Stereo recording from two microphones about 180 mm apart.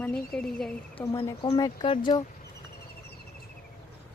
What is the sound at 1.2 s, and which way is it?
Speech, 25° left (ahead or behind).